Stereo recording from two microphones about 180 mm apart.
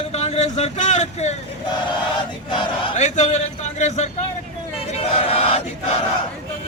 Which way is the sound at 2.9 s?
40° left (ahead or behind).